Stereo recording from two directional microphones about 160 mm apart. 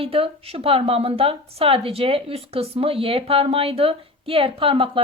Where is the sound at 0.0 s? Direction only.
35° right (ahead or behind).